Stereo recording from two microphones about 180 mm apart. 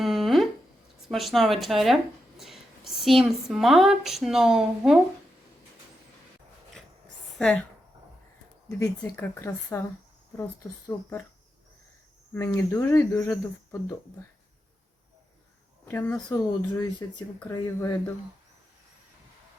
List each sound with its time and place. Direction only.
0.0 s a sound: centre (ahead or behind)
1.0 s a woman's voice: centre (ahead or behind)
7.3 s a woman's voice: 5° left (ahead or behind)
8.8 s speech: 10° left (ahead or behind)
12.3 s speech: 15° left (ahead or behind)
15.9 s speech: 10° left (ahead or behind)